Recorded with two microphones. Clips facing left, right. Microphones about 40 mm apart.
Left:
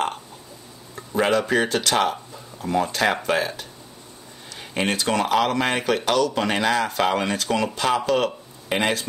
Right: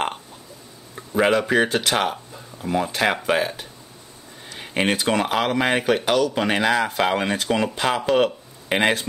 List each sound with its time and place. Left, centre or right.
0.9 s speech: centre